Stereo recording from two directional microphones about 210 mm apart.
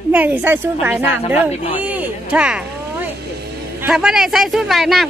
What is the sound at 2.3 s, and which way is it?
Speech, 5° right (ahead or behind).